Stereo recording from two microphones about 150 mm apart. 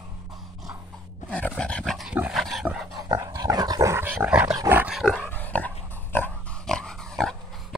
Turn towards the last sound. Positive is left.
turn(degrees=5)  # may be behind; listen again after turning